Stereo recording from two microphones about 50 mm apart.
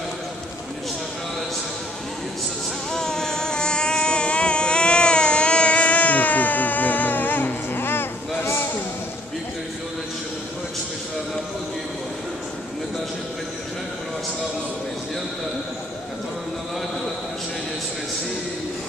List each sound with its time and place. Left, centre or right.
2.9 s vehicle: centre; by 8.5 s left